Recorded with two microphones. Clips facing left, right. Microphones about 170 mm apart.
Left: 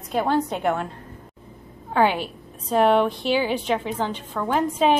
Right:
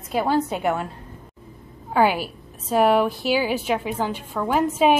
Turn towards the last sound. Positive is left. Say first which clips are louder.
# right 1 dB
turn(degrees=-5)  # may be behind; listen again after turning